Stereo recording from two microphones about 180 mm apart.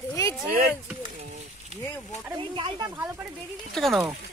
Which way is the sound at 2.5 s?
30° right (ahead or behind).